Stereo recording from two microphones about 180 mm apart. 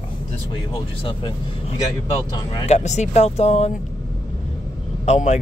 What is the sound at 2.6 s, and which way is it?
Speech, 40° left (ahead or behind).